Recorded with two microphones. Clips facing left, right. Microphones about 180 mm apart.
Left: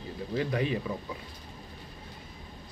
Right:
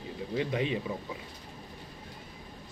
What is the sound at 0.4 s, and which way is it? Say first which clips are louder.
Speech: left 1 dB; 20° right (ahead or behind).